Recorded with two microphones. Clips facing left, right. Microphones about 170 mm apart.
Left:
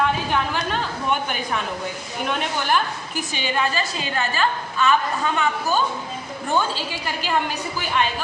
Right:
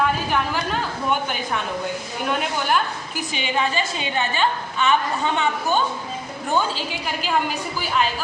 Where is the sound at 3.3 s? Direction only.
15° right (ahead or behind).